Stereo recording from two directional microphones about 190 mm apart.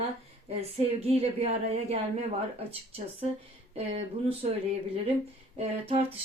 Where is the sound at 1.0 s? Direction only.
30° right (ahead or behind).